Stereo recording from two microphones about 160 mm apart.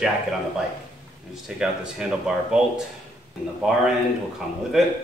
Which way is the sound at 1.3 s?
5° right (ahead or behind).